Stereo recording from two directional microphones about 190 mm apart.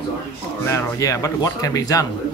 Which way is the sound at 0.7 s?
15° left (ahead or behind).